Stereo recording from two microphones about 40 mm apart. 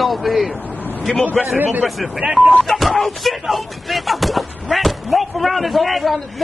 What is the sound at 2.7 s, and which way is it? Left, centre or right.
Speech, centre.